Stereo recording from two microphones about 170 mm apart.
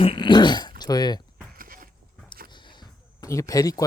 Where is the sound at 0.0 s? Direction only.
30° left (ahead or behind).